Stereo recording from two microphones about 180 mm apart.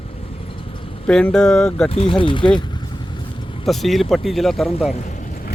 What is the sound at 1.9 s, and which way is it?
Speech, 30° left (ahead or behind).